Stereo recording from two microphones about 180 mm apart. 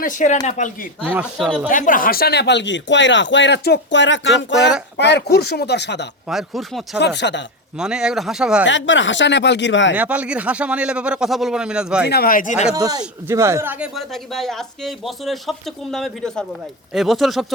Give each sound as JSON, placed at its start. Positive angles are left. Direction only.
{"t": 0.0, "sound": "speech", "side_deg": 45}
{"t": 1.0, "sound": "speech", "side_deg": -10}
{"t": 1.7, "sound": "speech", "side_deg": 50}
{"t": 4.9, "sound": "speech", "side_deg": 70}
{"t": 6.2, "sound": "speech", "side_deg": 0}
{"t": 7.0, "sound": "speech", "side_deg": 75}
{"t": 7.8, "sound": "speech", "side_deg": -5}
{"t": 8.6, "sound": "speech", "side_deg": 90}
{"t": 9.9, "sound": "speech", "side_deg": -10}
{"t": 12.0, "sound": "speech", "side_deg": 60}
{"t": 12.7, "sound": "speech", "side_deg": -20}